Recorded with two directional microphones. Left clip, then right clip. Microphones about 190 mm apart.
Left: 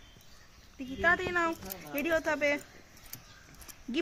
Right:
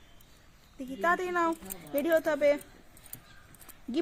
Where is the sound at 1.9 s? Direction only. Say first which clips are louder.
Right 3 dB; 65° right (ahead or behind).